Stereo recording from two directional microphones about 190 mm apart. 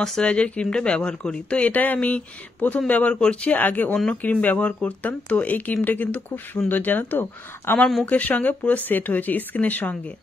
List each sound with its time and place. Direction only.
0.0 s speech: 5° left (ahead or behind)